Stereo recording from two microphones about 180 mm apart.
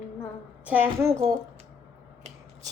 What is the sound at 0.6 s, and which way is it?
Speech, 10° right (ahead or behind).